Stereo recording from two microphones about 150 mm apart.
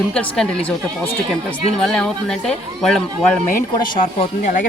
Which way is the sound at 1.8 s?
5° left (ahead or behind).